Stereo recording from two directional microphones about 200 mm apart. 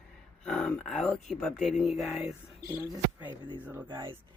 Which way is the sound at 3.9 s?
25° right (ahead or behind).